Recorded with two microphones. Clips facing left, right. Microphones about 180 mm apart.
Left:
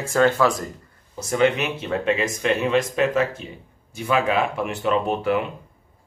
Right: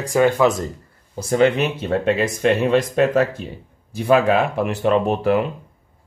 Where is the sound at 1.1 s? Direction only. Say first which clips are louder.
Right 3 dB; 35° right (ahead or behind).